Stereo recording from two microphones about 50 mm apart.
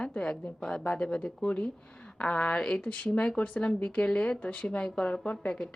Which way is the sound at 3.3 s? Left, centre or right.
Left.